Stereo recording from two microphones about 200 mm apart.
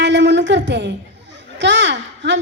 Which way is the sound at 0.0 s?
60° right (ahead or behind).